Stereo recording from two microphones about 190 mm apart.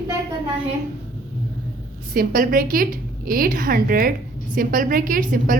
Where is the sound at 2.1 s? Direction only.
45° right (ahead or behind).